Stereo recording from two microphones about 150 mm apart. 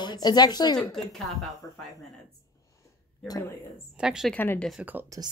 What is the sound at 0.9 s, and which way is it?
Speech, centre (ahead or behind).